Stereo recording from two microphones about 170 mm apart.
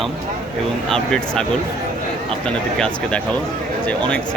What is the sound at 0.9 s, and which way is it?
Speech, 5° left (ahead or behind).